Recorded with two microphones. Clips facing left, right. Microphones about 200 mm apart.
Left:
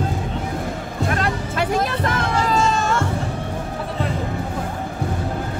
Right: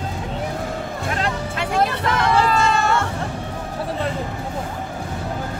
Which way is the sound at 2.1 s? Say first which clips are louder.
Right 4 dB; 65° right (ahead or behind).